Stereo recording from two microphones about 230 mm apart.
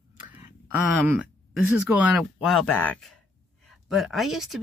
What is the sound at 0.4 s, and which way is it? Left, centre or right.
Speech, centre.